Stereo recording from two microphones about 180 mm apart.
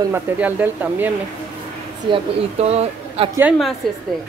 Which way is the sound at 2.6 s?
35° right (ahead or behind).